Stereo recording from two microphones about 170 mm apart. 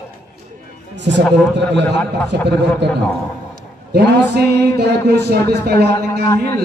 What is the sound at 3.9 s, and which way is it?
A man's voice, 80° right.